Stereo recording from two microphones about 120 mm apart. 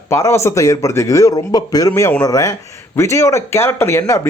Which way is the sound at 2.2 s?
30° left (ahead or behind).